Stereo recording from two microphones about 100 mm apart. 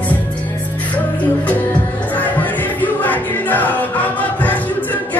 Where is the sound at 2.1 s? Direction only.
15° left (ahead or behind).